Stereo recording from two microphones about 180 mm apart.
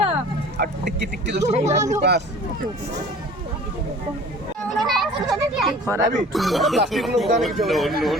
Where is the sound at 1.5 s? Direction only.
40° right (ahead or behind).